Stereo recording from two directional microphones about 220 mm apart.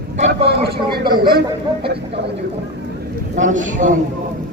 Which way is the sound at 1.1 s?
20° right (ahead or behind).